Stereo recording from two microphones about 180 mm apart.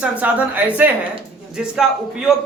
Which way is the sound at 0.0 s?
10° right (ahead or behind).